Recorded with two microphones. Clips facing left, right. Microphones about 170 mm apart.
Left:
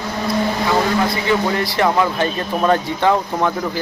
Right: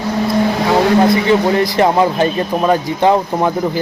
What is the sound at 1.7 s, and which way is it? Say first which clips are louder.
Speech: right 4 dB; 25° right (ahead or behind).